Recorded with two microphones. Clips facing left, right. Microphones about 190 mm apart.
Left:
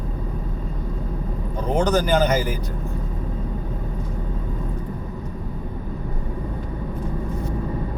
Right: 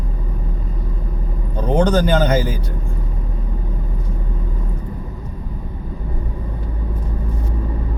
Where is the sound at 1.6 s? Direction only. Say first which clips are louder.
Right 4 dB; 25° right (ahead or behind).